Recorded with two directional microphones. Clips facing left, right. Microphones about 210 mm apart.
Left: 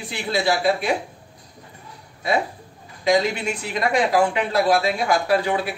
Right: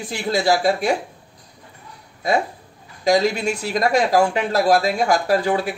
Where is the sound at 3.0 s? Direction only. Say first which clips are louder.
Right 2 dB; 40° right (ahead or behind).